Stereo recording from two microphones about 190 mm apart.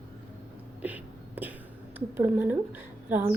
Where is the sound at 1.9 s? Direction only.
10° right (ahead or behind).